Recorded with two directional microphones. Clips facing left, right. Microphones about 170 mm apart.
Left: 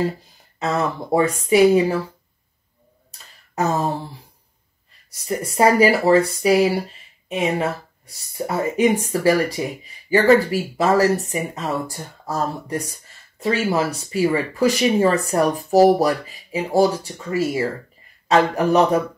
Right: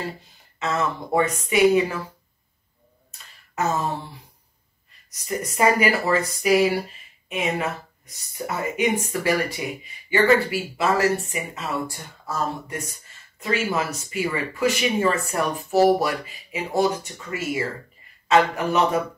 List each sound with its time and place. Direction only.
0.6 s speech: 35° left (ahead or behind)
3.1 s a sound: 35° left (ahead or behind)
5.1 s speech: 30° left (ahead or behind)